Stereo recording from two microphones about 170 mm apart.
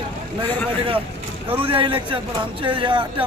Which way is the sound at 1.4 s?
35° right (ahead or behind).